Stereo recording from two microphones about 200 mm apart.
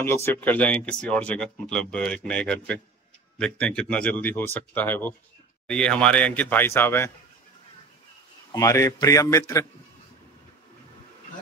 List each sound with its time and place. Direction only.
0.0 s speech: 10° left (ahead or behind)
8.5 s speech: 15° left (ahead or behind)